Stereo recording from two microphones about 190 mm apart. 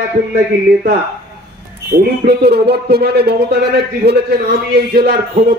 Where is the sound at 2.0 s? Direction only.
55° right (ahead or behind).